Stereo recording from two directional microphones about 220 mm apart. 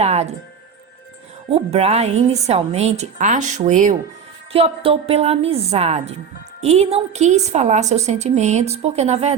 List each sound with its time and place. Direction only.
0.0 s music: 30° right (ahead or behind)
1.5 s a woman's voice: 25° right (ahead or behind)